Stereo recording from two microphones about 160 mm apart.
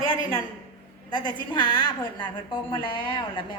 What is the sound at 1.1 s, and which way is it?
A woman's voice, 25° left (ahead or behind).